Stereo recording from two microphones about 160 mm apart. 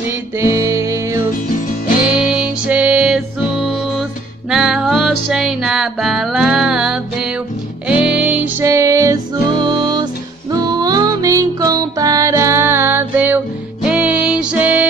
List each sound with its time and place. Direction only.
0.4 s music: 15° right (ahead or behind)
2.2 s music: 5° right (ahead or behind)
4.5 s music: 5° right (ahead or behind)